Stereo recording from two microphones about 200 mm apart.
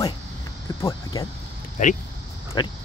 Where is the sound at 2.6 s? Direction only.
20° left (ahead or behind).